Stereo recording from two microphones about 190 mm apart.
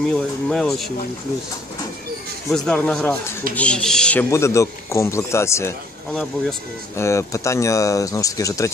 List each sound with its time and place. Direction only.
0.1 s speech: 5° left (ahead or behind)
2.5 s speech: 5° left (ahead or behind)